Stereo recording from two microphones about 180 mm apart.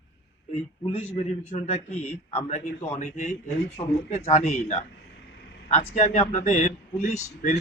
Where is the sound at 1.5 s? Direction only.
40° left (ahead or behind).